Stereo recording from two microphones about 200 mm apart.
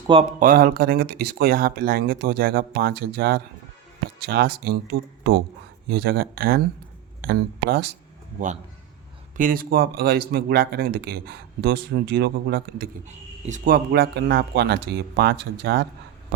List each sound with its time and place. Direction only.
0.3 s speech: 45° right (ahead or behind)
9.4 s speech: 45° right (ahead or behind)
13.1 s speech: 35° right (ahead or behind); by 15.9 s 55° right (ahead or behind)